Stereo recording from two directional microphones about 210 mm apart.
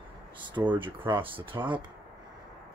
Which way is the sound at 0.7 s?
25° right (ahead or behind).